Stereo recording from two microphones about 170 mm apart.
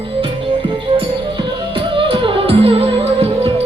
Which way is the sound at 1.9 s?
30° right (ahead or behind).